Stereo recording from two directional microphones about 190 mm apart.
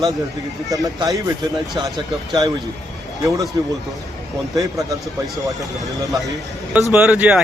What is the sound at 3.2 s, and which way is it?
Speech, 20° right (ahead or behind).